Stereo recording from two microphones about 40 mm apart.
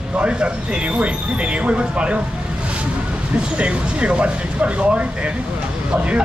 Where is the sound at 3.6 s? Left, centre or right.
Right.